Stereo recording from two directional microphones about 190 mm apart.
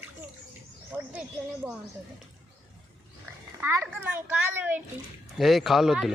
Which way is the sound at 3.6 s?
10° right (ahead or behind).